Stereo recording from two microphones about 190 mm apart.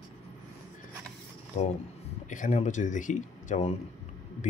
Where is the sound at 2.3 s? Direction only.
40° left (ahead or behind).